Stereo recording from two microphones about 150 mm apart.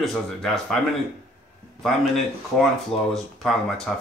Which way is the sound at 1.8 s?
Centre (ahead or behind).